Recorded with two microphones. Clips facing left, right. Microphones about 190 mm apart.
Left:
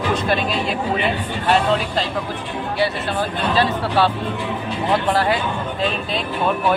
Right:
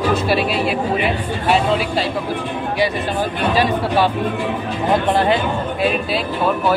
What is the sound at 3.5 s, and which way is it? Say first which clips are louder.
Speech: right 2 dB; 10° right (ahead or behind).